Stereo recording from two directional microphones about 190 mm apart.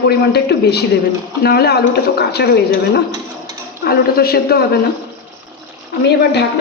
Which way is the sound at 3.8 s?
55° left (ahead or behind).